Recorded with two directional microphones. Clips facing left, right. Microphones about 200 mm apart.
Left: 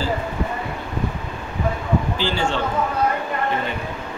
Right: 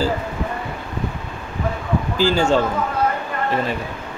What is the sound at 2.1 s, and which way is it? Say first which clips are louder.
Speech: right 6 dB; 40° right (ahead or behind).